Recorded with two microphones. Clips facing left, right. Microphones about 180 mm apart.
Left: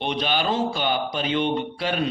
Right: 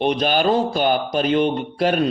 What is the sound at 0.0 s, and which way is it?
A man's voice, 45° right (ahead or behind).